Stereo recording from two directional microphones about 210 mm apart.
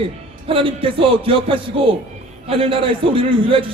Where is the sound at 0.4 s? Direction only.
25° right (ahead or behind).